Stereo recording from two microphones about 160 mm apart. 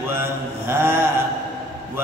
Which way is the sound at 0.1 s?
15° right (ahead or behind).